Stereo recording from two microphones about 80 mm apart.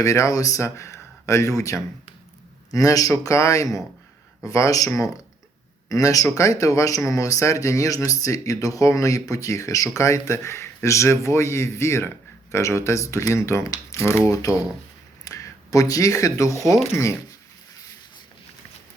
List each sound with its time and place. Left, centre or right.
0.0 s a man's voice: left
5.9 s a man's voice: left
15.2 s a sound: left